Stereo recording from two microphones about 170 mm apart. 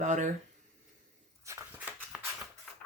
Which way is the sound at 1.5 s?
15° right (ahead or behind).